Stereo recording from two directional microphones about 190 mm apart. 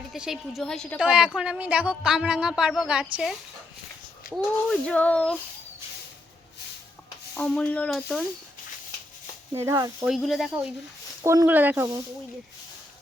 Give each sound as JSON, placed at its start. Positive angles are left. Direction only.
{"t": 0.1, "sound": "a woman's voice", "side_deg": 0}
{"t": 7.3, "sound": "a woman's voice", "side_deg": 5}
{"t": 9.6, "sound": "speech", "side_deg": -15}
{"t": 10.1, "sound": "a woman's voice", "side_deg": 0}
{"t": 11.2, "sound": "speech", "side_deg": -15}